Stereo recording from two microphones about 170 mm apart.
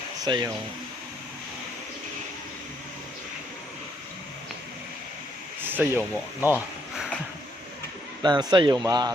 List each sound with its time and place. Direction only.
0.3 s speech: 25° right (ahead or behind)
5.6 s speech: 10° right (ahead or behind)
8.2 s speech: 25° right (ahead or behind)